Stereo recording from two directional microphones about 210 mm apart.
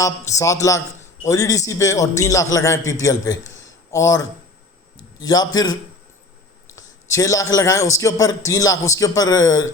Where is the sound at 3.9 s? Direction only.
15° left (ahead or behind).